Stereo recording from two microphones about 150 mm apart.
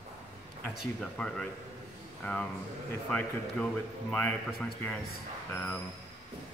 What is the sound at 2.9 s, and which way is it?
A man's voice, 10° left (ahead or behind).